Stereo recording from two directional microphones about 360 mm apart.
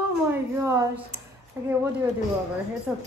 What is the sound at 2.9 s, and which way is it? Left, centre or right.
Speech, centre.